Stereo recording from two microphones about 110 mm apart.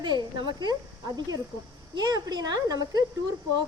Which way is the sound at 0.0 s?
40° right (ahead or behind).